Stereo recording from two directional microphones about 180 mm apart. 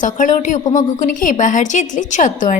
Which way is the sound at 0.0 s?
45° left (ahead or behind).